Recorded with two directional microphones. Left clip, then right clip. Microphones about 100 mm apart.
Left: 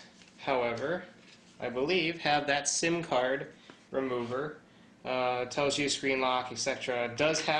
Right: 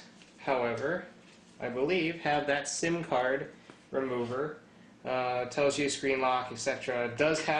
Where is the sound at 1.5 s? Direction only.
30° left (ahead or behind).